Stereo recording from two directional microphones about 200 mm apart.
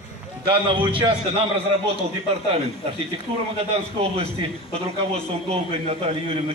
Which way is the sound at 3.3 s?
25° right (ahead or behind).